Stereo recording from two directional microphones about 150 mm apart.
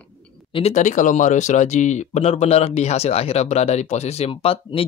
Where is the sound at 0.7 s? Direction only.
55° left (ahead or behind).